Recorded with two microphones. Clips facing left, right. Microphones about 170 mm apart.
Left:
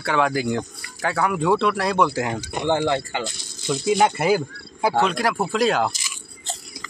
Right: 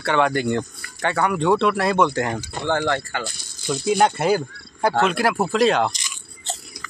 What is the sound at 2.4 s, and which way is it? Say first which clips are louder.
Speech: left 1 dB; 15° left (ahead or behind).